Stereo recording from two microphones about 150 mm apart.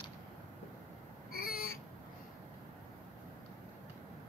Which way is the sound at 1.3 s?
70° left (ahead or behind).